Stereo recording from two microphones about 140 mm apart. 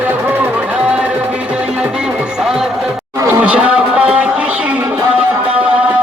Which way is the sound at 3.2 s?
20° right (ahead or behind).